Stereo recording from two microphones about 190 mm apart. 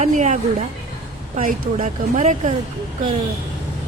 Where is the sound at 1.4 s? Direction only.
45° right (ahead or behind).